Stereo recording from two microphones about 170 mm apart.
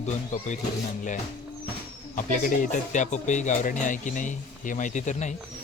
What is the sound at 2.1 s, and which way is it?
Speech, 50° left (ahead or behind).